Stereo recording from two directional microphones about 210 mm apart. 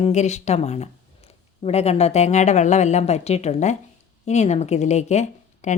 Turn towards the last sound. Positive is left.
turn(degrees=35)  # may be behind; listen again after turning